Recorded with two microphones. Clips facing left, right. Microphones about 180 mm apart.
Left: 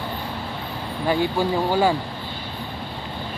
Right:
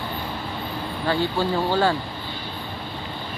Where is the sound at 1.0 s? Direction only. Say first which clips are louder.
Left 2 dB; 15° left (ahead or behind).